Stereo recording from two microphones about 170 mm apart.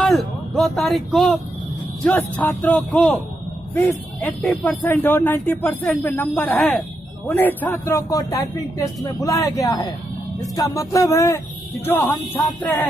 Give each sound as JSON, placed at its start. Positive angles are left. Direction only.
{"t": 0.0, "sound": "a man's voice", "side_deg": 0}